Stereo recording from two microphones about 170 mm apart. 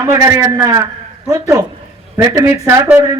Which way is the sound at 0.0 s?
15° right (ahead or behind).